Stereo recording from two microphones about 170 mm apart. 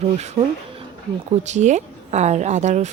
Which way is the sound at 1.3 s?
45° right (ahead or behind).